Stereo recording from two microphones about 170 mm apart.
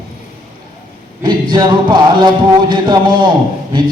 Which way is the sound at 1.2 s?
25° right (ahead or behind).